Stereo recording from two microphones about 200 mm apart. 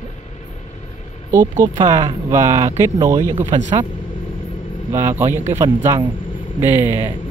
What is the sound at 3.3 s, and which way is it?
Speech, 30° right (ahead or behind).